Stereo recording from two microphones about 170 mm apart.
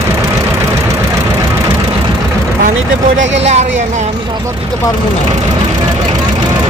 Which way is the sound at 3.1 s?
90° right.